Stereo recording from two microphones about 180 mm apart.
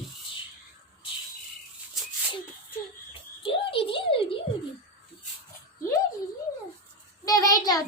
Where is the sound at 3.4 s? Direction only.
30° left (ahead or behind).